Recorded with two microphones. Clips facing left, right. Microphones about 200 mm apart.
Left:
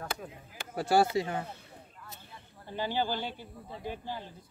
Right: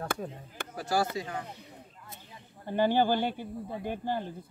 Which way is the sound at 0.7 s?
30° left (ahead or behind).